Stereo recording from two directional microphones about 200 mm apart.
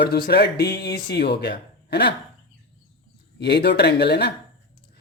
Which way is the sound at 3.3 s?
60° left (ahead or behind).